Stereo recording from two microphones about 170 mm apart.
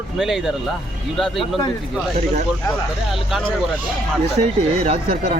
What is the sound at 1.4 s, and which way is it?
Speech, 30° left (ahead or behind).